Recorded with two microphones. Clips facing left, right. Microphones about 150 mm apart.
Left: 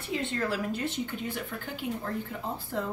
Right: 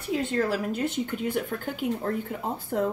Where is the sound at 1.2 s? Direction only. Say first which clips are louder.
Right 7 dB; 55° right (ahead or behind).